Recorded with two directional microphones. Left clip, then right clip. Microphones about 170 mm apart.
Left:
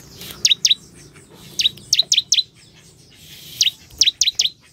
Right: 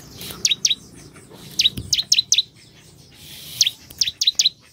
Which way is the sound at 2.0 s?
20° left (ahead or behind).